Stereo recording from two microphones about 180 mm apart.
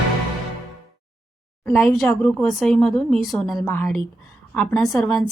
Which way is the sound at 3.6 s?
10° left (ahead or behind).